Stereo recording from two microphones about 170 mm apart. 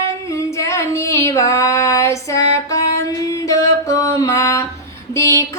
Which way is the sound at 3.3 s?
20° left (ahead or behind).